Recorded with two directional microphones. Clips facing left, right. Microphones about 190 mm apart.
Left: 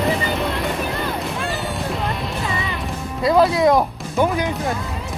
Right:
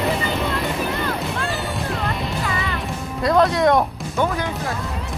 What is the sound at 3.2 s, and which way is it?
Speech, centre (ahead or behind).